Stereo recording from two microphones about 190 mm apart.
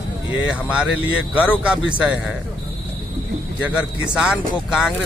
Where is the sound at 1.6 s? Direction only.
5° right (ahead or behind).